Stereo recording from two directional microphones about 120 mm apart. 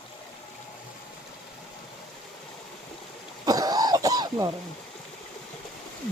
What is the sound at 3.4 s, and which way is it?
Throat clearing, 30° right (ahead or behind).